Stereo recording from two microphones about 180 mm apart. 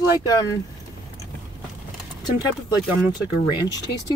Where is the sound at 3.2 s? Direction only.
20° left (ahead or behind).